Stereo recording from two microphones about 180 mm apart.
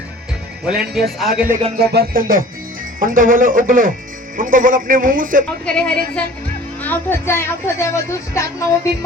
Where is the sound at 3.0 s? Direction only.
50° right (ahead or behind).